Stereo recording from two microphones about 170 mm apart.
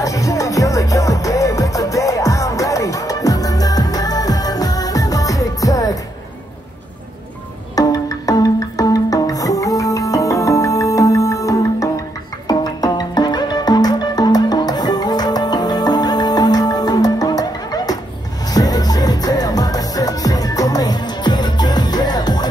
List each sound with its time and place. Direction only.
0.0 s music: 20° left (ahead or behind)
7.7 s music: 20° left (ahead or behind)